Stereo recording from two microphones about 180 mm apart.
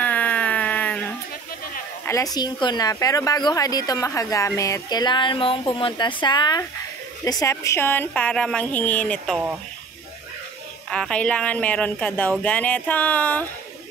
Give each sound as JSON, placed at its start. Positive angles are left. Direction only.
{"t": 0.0, "sound": "a sound", "side_deg": 10}
{"t": 2.0, "sound": "a woman's voice", "side_deg": 20}
{"t": 10.9, "sound": "speech", "side_deg": 5}